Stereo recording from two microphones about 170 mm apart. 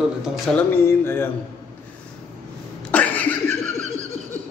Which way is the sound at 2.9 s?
10° left (ahead or behind).